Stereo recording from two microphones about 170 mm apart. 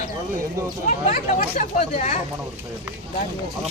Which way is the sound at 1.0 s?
45° left (ahead or behind).